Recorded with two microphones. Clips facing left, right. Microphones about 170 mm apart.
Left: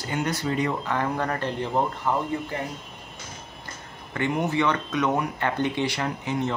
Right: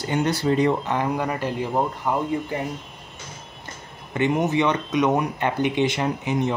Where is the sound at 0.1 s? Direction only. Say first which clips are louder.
Right 5 dB; 30° right (ahead or behind).